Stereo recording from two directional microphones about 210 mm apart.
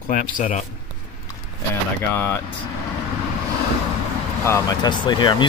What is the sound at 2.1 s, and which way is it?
Speech, 10° left (ahead or behind).